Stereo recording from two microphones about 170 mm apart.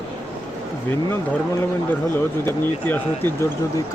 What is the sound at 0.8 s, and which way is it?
Speech, 15° left (ahead or behind).